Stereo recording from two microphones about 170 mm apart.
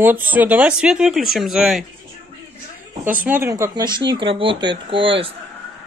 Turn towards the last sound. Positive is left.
turn(degrees=-30)  # may be behind; listen again after turning